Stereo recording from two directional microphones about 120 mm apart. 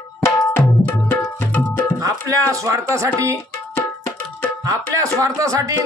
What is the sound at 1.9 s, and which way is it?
Speech, 25° right (ahead or behind).